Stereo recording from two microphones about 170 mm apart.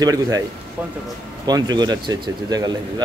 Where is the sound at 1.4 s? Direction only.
25° right (ahead or behind).